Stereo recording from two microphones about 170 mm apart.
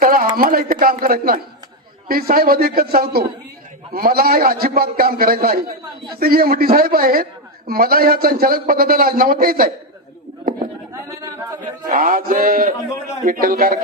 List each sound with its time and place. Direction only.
0.0 s a sound: 55° right (ahead or behind)
0.3 s a man's voice: 55° right (ahead or behind)
11.2 s singing: 20° right (ahead or behind)
11.9 s a man's voice: 55° right (ahead or behind)